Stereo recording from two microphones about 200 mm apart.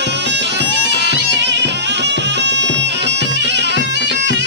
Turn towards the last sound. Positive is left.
turn(degrees=55)  # may be behind; listen again after turning